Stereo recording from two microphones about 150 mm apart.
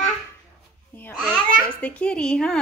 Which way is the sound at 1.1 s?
5° left (ahead or behind).